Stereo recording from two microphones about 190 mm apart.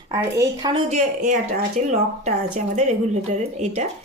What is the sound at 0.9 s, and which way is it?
Speech, 40° right (ahead or behind).